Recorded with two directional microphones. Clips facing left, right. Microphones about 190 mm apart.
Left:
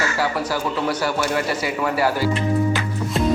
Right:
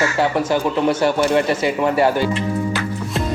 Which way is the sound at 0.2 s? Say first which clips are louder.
Right 6 dB; 20° right (ahead or behind).